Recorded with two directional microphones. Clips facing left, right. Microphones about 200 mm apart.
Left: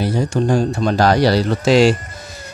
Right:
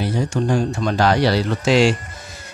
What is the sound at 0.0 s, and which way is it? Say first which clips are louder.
Speech: left 3 dB; 35° left (ahead or behind).